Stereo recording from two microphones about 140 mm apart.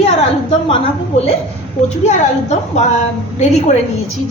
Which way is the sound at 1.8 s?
55° left (ahead or behind).